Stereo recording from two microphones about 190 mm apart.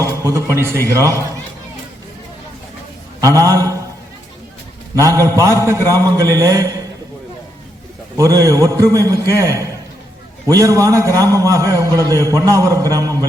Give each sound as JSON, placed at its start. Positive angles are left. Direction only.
{"t": 0.0, "sound": "a sound", "side_deg": -15}
{"t": 0.5, "sound": "a man's voice", "side_deg": -15}
{"t": 3.2, "sound": "a man's voice", "side_deg": -15}
{"t": 4.9, "sound": "a man's voice", "side_deg": -15}
{"t": 8.1, "sound": "a man's voice", "side_deg": -15}